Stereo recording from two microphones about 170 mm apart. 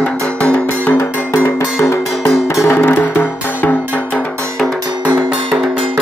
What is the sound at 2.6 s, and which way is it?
Music, 15° left (ahead or behind).